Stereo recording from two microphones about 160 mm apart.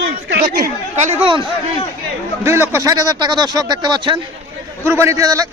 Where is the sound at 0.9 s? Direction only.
45° right (ahead or behind).